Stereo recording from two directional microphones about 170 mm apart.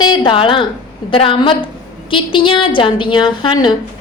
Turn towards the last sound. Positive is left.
turn(degrees=30)  # may be behind; listen again after turning